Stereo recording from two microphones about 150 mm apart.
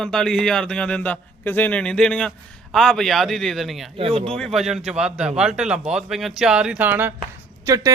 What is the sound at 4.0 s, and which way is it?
Speech, 40° right (ahead or behind).